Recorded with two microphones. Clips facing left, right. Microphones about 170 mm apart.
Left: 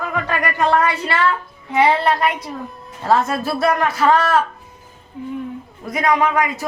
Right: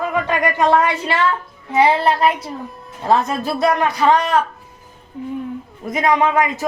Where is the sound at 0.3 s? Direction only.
20° right (ahead or behind).